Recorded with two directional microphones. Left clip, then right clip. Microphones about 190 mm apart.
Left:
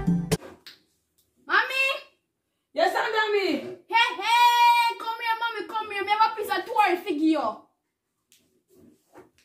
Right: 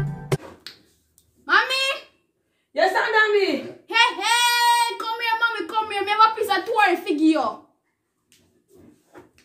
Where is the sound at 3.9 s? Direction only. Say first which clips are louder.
Right 3 dB; 55° right (ahead or behind).